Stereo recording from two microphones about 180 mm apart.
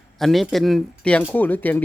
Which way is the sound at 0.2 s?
Centre (ahead or behind).